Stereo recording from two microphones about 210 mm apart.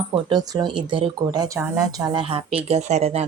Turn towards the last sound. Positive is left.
turn(degrees=-30)  # may be behind; listen again after turning